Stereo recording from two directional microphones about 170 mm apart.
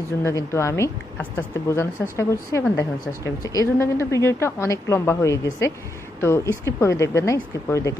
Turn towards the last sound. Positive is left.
turn(degrees=20)  # may be behind; listen again after turning